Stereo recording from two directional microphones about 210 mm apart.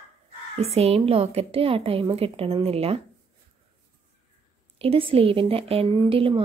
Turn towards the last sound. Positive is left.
turn(degrees=-25)  # may be behind; listen again after turning